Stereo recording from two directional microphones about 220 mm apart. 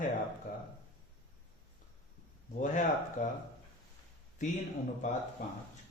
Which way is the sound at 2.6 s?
35° left (ahead or behind).